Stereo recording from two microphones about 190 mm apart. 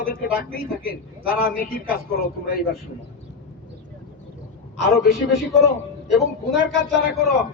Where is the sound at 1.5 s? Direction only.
50° left (ahead or behind).